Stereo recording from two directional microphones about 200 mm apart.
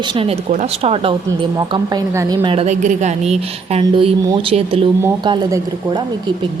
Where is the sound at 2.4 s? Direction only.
25° right (ahead or behind).